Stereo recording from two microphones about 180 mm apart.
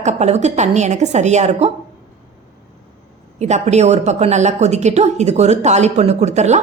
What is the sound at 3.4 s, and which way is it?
A woman's voice, 40° right (ahead or behind).